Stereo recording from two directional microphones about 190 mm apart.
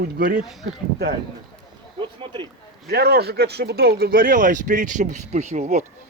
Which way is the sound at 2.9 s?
55° right (ahead or behind).